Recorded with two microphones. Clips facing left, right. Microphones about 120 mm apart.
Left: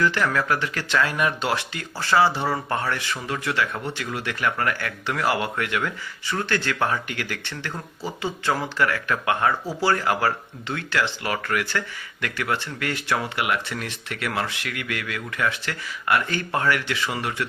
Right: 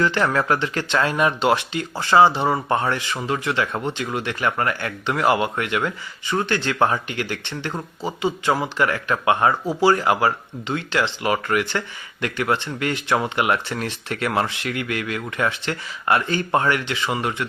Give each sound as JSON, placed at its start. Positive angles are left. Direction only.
{"t": 0.0, "sound": "speech", "side_deg": -25}